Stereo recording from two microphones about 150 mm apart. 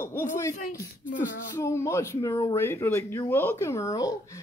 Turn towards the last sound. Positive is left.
turn(degrees=20)  # may be behind; listen again after turning